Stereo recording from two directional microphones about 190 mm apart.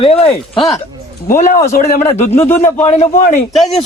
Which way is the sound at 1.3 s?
45° left (ahead or behind).